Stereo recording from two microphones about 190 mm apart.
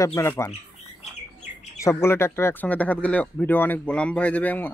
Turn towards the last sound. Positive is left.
turn(degrees=5)  # may be behind; listen again after turning